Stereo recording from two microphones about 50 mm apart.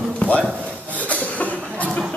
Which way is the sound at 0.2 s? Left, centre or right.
Left.